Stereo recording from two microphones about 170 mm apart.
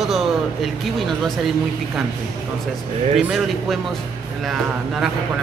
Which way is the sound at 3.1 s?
Centre (ahead or behind).